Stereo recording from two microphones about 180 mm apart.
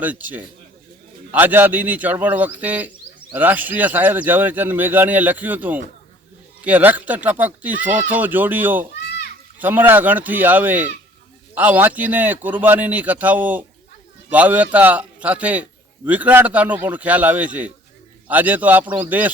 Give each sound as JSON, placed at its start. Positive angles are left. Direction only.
{"t": 0.0, "sound": "speech", "side_deg": -10}